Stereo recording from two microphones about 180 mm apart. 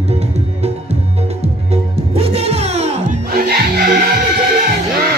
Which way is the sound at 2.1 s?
35° right (ahead or behind).